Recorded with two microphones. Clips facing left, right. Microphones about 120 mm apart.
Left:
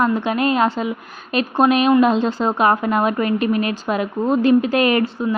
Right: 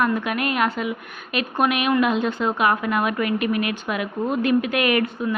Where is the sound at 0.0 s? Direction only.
30° left (ahead or behind).